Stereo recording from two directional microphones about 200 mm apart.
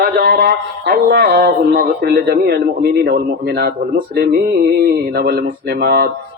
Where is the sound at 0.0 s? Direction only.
50° right (ahead or behind).